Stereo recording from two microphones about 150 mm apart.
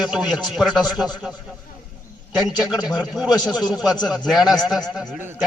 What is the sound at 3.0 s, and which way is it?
Speech, 5° right (ahead or behind).